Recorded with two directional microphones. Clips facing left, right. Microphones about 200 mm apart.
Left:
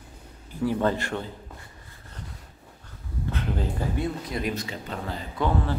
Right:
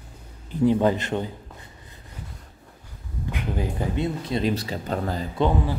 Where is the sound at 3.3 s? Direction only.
15° right (ahead or behind); by 5.2 s 40° right (ahead or behind).